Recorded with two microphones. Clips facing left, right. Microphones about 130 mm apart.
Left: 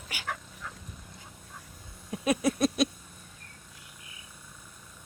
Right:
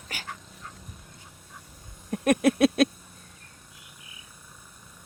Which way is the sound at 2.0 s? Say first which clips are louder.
Right 5 dB; 55° right (ahead or behind).